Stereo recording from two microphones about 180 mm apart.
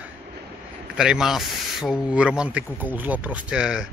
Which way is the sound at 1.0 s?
5° right (ahead or behind).